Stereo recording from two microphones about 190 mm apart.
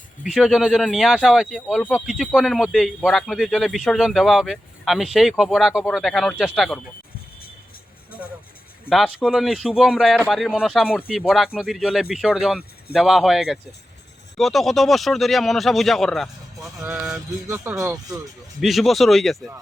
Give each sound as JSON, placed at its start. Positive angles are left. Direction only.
{"t": 0.3, "sound": "speech", "side_deg": 0}
{"t": 8.9, "sound": "speech", "side_deg": -5}
{"t": 17.5, "sound": "speech", "side_deg": -15}
{"t": 18.6, "sound": "speech", "side_deg": 0}